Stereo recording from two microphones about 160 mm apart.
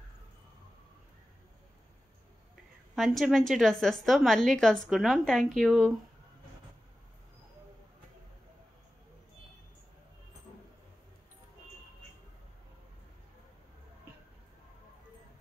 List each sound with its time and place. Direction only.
3.0 s speech: centre (ahead or behind)